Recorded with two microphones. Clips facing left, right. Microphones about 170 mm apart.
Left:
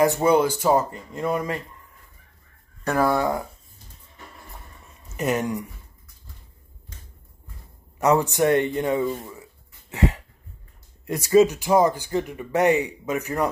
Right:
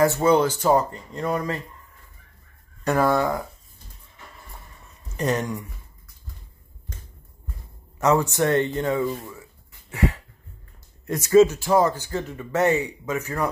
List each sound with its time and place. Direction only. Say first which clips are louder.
0.0 s speech: even; 15° left (ahead or behind)
3.0 s speech: even; 10° left (ahead or behind)
5.1 s speech: left 1 dB; 10° left (ahead or behind)
8.0 s speech: left 1 dB; 15° left (ahead or behind)
9.3 s a sound: even; 20° left (ahead or behind)
11.1 s speech: right 1 dB; 15° left (ahead or behind)